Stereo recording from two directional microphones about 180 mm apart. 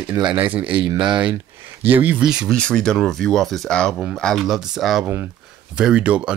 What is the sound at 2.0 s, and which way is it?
Speech, 5° right (ahead or behind).